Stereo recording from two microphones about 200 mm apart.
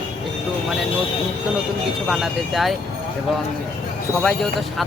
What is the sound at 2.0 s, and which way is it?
Speech, centre (ahead or behind).